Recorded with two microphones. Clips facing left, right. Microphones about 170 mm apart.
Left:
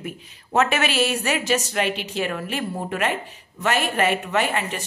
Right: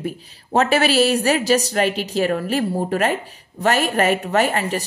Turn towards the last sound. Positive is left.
turn(degrees=-40)  # may be behind; listen again after turning